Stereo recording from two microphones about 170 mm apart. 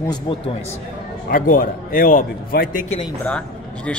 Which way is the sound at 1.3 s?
55° left (ahead or behind).